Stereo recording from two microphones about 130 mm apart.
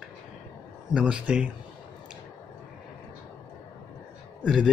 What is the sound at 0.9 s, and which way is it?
Speech, 10° right (ahead or behind).